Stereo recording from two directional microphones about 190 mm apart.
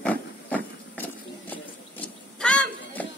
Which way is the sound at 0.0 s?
10° left (ahead or behind).